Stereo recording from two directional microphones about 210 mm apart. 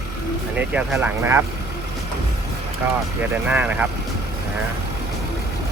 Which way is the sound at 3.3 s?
5° right (ahead or behind).